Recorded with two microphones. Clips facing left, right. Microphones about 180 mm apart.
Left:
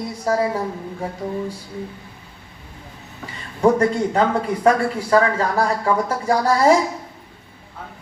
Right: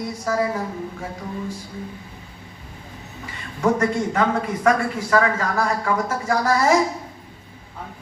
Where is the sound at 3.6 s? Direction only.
35° left (ahead or behind).